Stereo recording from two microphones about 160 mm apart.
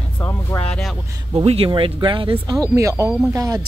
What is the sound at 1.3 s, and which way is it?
Speech, 35° right (ahead or behind).